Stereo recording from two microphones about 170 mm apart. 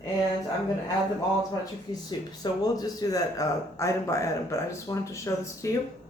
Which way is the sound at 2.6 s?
20° left (ahead or behind).